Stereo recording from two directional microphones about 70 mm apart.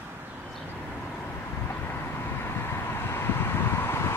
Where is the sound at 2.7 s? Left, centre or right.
Left.